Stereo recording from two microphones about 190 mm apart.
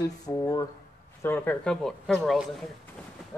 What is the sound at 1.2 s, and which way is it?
Speech, 10° left (ahead or behind).